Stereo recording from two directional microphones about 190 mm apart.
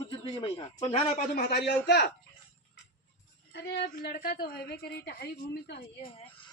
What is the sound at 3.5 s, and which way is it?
A woman's voice, 65° left (ahead or behind).